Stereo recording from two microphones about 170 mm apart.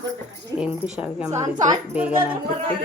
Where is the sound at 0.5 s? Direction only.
5° right (ahead or behind).